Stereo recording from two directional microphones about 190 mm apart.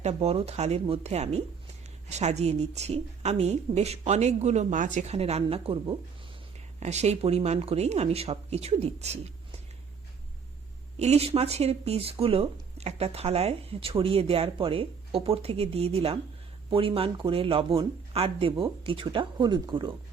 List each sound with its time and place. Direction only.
0.0 s speech: 35° right (ahead or behind)
10.9 s speech: 35° right (ahead or behind)